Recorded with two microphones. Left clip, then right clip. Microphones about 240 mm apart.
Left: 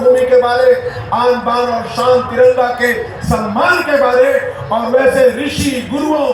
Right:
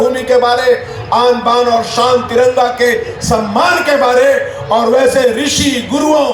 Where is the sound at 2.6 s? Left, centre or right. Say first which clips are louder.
Right 2 dB; right.